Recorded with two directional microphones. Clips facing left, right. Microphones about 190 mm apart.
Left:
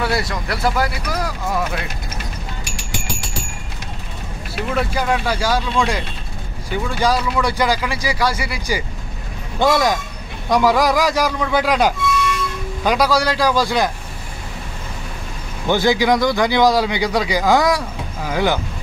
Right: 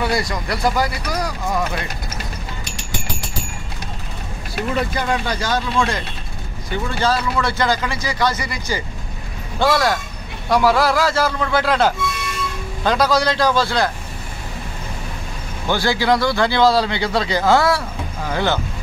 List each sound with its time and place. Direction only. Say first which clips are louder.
0.0 s speech: even; 5° left (ahead or behind)
4.7 s a man's voice: left 2 dB; 5° left (ahead or behind)
15.6 s a man's voice: left 3 dB; 20° left (ahead or behind)